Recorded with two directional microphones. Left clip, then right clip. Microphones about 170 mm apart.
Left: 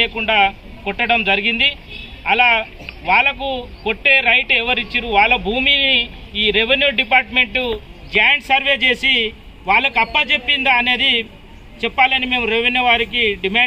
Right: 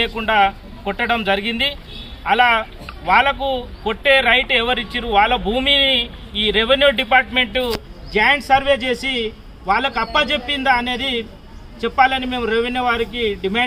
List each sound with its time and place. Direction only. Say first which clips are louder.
0.0 s a man's voice: left 1 dB; 15° right (ahead or behind)